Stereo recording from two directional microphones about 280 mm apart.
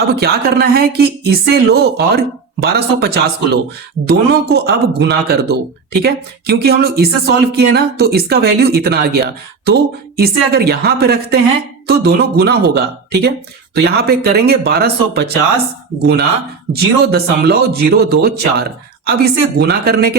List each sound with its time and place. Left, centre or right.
0.1 s speech: right
16.7 s speech: right